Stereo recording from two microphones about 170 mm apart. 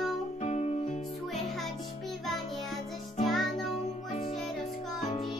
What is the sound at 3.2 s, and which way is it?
Music, centre (ahead or behind).